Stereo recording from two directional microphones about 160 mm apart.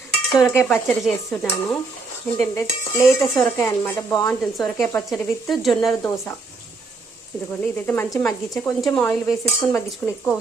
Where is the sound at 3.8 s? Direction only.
15° left (ahead or behind).